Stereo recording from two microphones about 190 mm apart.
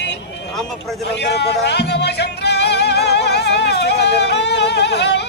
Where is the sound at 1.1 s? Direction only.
60° left (ahead or behind).